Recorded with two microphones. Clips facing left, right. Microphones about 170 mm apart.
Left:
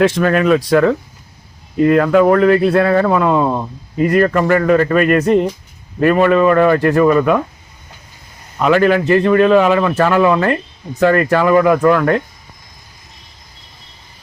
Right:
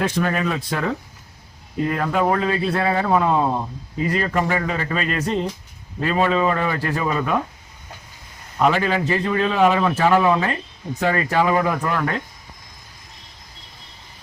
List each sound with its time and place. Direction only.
0.0 s a man's voice: 75° left (ahead or behind)
8.6 s a man's voice: 65° left (ahead or behind)